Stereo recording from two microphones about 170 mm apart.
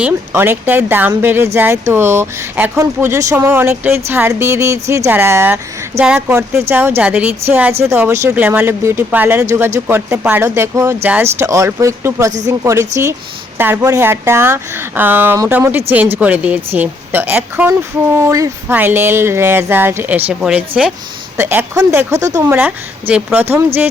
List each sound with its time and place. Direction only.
0.0 s speech: 10° right (ahead or behind)